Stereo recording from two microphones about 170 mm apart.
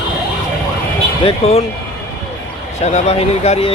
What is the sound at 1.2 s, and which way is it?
Speech, 35° left (ahead or behind).